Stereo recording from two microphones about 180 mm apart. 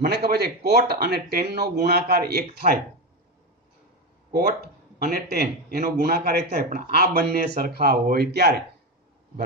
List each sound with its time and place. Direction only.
0.0 s speech: 60° right (ahead or behind)
4.3 s speech: 55° right (ahead or behind)